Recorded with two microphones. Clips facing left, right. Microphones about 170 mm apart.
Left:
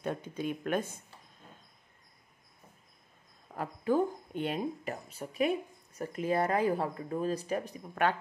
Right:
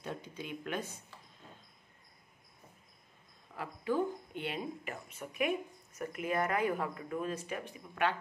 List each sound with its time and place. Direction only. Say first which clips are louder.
0.0 s speech: left 8 dB; 50° left (ahead or behind)
3.5 s speech: left 4 dB; 45° left (ahead or behind)